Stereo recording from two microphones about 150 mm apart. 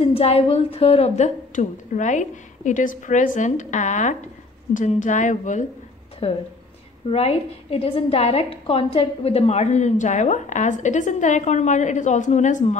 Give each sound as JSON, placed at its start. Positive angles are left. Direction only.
{"t": 0.0, "sound": "a woman's voice", "side_deg": 40}
{"t": 6.2, "sound": "a woman's voice", "side_deg": 40}